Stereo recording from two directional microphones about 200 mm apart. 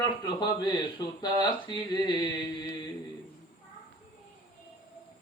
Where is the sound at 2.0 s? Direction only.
20° left (ahead or behind).